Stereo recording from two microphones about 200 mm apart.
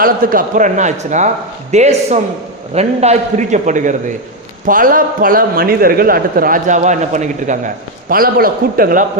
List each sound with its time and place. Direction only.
0.0 s a man's voice: 45° right (ahead or behind)